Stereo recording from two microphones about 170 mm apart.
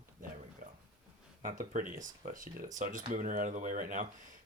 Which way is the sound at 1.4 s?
50° right (ahead or behind).